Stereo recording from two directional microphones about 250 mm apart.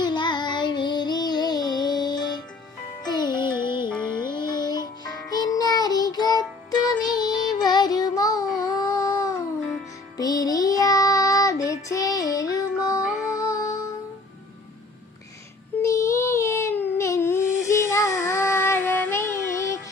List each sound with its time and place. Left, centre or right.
0.0 s child singing: centre
3.1 s music: centre
15.8 s a sound: centre
17.7 s child singing: centre